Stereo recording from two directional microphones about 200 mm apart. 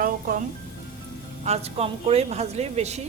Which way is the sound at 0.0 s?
45° right (ahead or behind).